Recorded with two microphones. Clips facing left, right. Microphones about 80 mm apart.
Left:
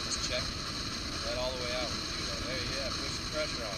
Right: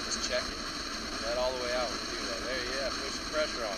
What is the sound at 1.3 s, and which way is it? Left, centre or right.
Speech, centre.